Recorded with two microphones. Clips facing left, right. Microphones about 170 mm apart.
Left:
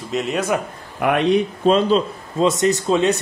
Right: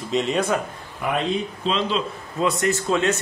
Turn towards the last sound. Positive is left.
turn(degrees=15)  # may be behind; listen again after turning